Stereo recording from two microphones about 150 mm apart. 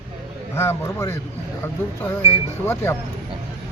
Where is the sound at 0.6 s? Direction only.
20° left (ahead or behind).